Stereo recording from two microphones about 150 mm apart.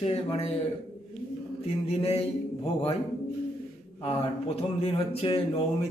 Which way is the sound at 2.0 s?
40° left (ahead or behind).